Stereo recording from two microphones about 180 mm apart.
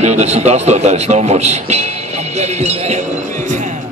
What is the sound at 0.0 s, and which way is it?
A man's voice, 40° right (ahead or behind).